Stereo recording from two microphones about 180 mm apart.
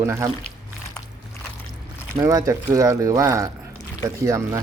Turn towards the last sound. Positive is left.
turn(degrees=-15)  # may be behind; listen again after turning